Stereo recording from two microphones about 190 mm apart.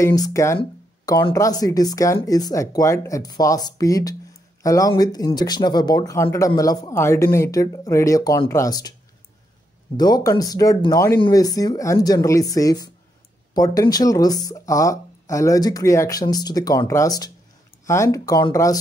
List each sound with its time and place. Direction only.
0.0 s speech: 20° left (ahead or behind)
9.9 s speech: 20° left (ahead or behind)